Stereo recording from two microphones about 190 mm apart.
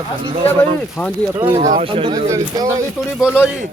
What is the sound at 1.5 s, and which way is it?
Speech, 35° right (ahead or behind).